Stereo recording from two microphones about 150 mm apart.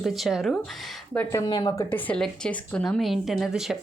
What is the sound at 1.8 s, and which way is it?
Speech, 10° left (ahead or behind).